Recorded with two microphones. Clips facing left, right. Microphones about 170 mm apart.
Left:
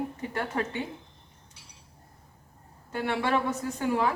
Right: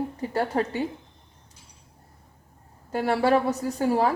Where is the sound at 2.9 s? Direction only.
40° right (ahead or behind).